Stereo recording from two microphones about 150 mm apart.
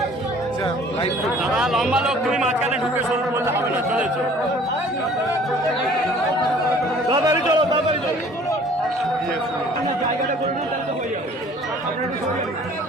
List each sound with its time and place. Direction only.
1.5 s a man's voice: centre (ahead or behind)
2.9 s speech: 15° right (ahead or behind)
7.1 s a sound: 25° right (ahead or behind)